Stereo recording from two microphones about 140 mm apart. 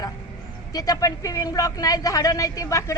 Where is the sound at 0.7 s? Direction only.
25° left (ahead or behind).